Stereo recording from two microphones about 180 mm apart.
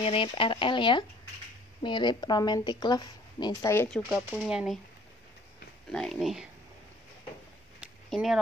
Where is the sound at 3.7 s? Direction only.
10° left (ahead or behind).